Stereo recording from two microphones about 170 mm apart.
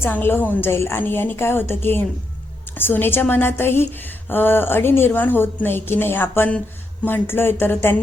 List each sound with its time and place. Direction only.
0.0 s a woman's voice: 10° left (ahead or behind)